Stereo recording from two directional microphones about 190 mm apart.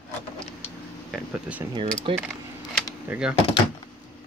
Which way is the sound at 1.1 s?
5° right (ahead or behind).